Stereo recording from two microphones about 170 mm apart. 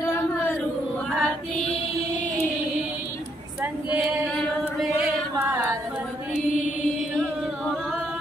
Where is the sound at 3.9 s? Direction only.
Centre (ahead or behind).